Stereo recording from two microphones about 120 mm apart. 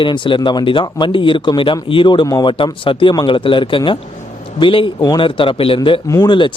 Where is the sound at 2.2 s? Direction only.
30° left (ahead or behind).